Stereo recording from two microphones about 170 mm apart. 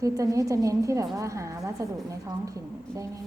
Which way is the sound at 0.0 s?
20° right (ahead or behind).